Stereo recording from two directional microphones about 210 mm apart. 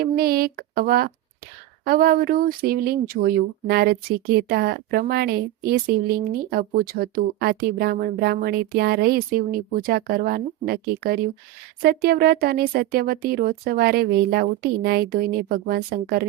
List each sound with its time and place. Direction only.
0.0 s speech: 45° right (ahead or behind)